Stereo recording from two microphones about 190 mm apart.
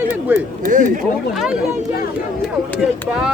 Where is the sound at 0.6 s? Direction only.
45° right (ahead or behind).